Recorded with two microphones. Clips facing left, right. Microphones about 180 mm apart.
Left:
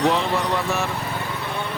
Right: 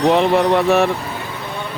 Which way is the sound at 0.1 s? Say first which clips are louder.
Right 8 dB; 65° right (ahead or behind).